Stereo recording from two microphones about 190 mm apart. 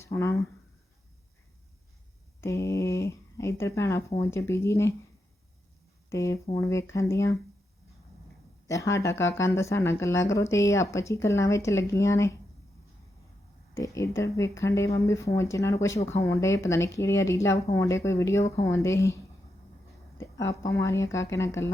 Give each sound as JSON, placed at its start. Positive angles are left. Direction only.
{"t": 0.0, "sound": "speech", "side_deg": 15}
{"t": 2.4, "sound": "speech", "side_deg": 15}
{"t": 6.1, "sound": "speech", "side_deg": 15}
{"t": 8.6, "sound": "speech", "side_deg": 15}
{"t": 13.7, "sound": "speech", "side_deg": 15}
{"t": 20.4, "sound": "speech", "side_deg": 15}